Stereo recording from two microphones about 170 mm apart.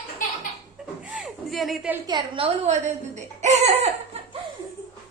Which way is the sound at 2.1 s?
30° right (ahead or behind).